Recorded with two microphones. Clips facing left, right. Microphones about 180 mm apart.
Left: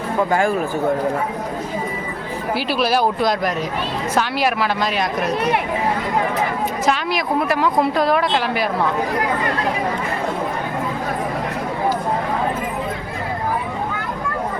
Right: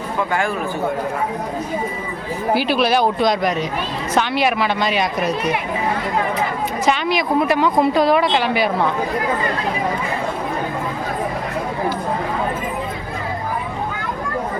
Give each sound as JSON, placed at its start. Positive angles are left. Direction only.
{"t": 0.3, "sound": "speech", "side_deg": 40}
{"t": 2.6, "sound": "speech", "side_deg": 0}
{"t": 6.8, "sound": "speech", "side_deg": 0}